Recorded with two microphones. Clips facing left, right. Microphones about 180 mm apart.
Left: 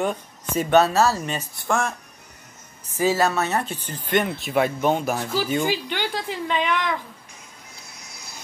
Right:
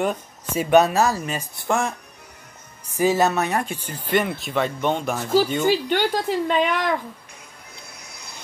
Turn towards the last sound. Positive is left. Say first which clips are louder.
# right 3 dB
turn(degrees=-45)  # may be behind; listen again after turning